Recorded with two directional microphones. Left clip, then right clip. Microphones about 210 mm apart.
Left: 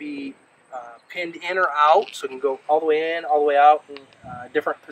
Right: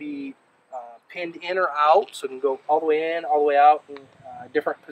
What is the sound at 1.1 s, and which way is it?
Speech, 10° right (ahead or behind).